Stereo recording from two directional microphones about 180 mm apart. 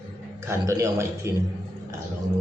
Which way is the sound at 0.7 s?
15° right (ahead or behind).